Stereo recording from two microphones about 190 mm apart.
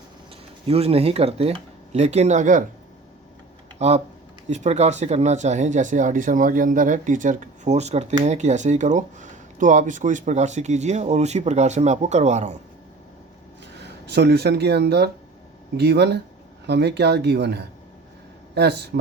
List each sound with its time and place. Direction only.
0.7 s speech: 30° right (ahead or behind)
3.8 s speech: 35° right (ahead or behind)
13.8 s speech: 60° right (ahead or behind)